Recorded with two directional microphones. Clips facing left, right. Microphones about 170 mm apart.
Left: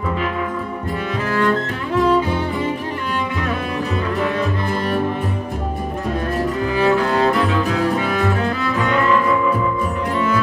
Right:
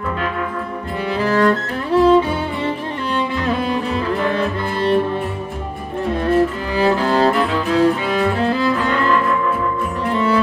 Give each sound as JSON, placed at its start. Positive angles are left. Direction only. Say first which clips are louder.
{"t": 1.2, "sound": "cello", "louder": "right 3 dB", "side_deg": -35}
{"t": 6.8, "sound": "music", "louder": "right 2 dB", "side_deg": -35}